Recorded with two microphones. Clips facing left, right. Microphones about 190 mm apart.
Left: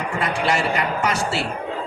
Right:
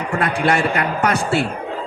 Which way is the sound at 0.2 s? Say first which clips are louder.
Right 3 dB; 55° right (ahead or behind).